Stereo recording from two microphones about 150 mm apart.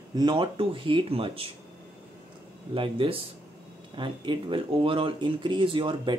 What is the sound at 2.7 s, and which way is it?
Speech, 35° right (ahead or behind).